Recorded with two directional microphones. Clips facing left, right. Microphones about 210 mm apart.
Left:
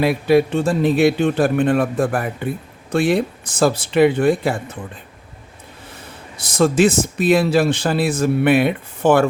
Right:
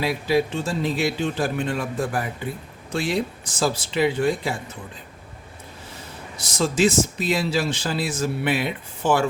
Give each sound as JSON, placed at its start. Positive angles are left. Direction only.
{"t": 0.0, "sound": "speech", "side_deg": 55}
{"t": 6.3, "sound": "speech", "side_deg": 55}